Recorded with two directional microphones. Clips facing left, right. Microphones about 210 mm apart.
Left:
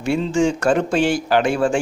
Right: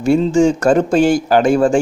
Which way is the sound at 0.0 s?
40° right (ahead or behind).